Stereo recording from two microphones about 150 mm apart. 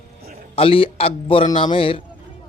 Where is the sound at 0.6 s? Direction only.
35° left (ahead or behind).